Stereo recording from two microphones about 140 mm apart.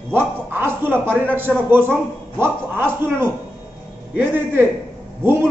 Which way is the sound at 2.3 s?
15° right (ahead or behind).